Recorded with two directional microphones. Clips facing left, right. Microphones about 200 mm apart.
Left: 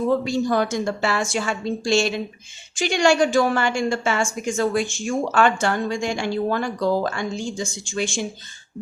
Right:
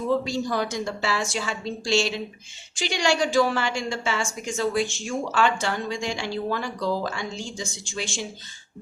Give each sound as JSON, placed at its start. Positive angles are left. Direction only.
{"t": 0.3, "sound": "a woman's voice", "side_deg": 55}